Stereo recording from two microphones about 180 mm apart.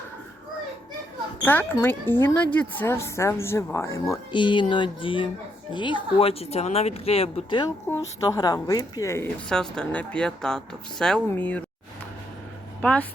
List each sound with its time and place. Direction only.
1.4 s a woman's voice: 10° left (ahead or behind); by 7.6 s 35° left (ahead or behind)
7.9 s a woman's voice: 15° left (ahead or behind)
9.5 s speech: 5° left (ahead or behind)
12.8 s speech: 5° left (ahead or behind)